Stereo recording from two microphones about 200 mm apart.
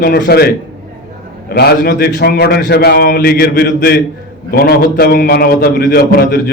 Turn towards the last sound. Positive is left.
turn(degrees=50)  # may be behind; listen again after turning